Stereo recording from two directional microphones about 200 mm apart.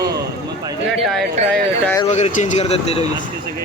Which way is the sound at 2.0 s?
35° left (ahead or behind).